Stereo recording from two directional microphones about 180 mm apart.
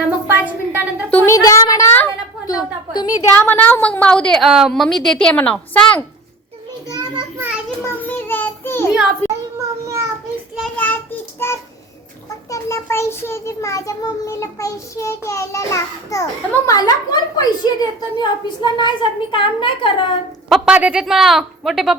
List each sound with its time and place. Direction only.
0.3 s a woman's voice: 10° right (ahead or behind)
1.1 s a child's voice: 15° left (ahead or behind)
6.8 s a sound: 20° right (ahead or behind)
7.9 s a sound: 10° left (ahead or behind)
11.4 s a child's voice: 15° left (ahead or behind)
20.5 s speech: 5° right (ahead or behind)